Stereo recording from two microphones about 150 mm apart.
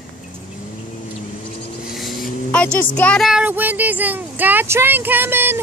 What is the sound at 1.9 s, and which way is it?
Vehicle, centre (ahead or behind).